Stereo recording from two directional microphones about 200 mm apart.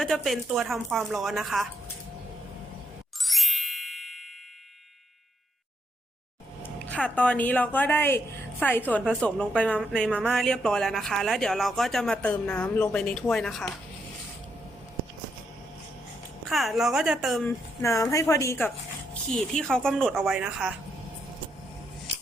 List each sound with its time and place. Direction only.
0.0 s speech: centre (ahead or behind)
3.2 s music: centre (ahead or behind)
6.6 s speech: 10° left (ahead or behind)
16.5 s speech: centre (ahead or behind)
17.8 s speech: 15° left (ahead or behind); by 20.7 s 5° right (ahead or behind)